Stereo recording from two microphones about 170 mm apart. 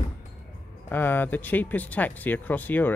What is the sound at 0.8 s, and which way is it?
Speech, 10° left (ahead or behind).